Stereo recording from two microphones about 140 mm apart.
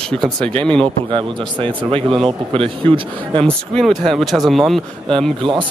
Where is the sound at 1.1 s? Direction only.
40° right (ahead or behind).